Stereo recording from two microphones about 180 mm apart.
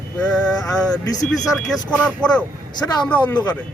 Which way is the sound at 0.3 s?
5° left (ahead or behind).